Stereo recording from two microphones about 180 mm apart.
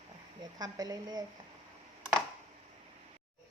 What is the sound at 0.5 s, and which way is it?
Speech, 20° right (ahead or behind).